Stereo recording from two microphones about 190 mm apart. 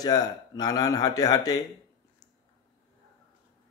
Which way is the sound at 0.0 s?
20° left (ahead or behind).